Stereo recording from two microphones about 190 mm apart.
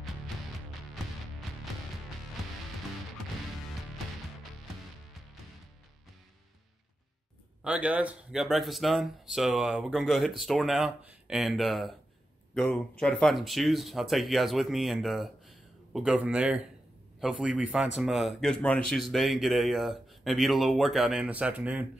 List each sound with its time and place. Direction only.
7.6 s a man's voice: 5° right (ahead or behind)